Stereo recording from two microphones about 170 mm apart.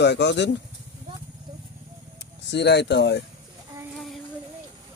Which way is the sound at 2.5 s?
90° left.